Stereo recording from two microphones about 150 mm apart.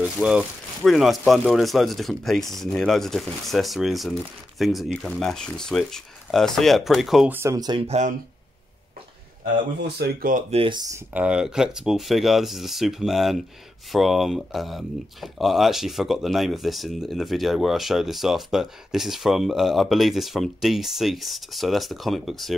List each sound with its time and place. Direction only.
0.0 s speech: 10° right (ahead or behind)
7.3 s speech: 20° right (ahead or behind)
7.8 s speech: 45° right (ahead or behind)
9.9 s speech: 80° right
10.5 s speech: 35° right (ahead or behind)
11.1 s speech: 5° right (ahead or behind)